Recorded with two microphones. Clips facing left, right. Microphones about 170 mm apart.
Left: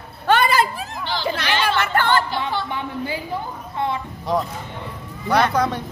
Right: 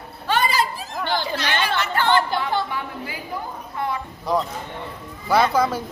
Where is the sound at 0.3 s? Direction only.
60° left (ahead or behind).